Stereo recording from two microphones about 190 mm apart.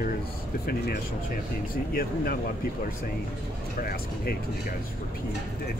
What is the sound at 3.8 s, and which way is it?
Speech, 50° left (ahead or behind).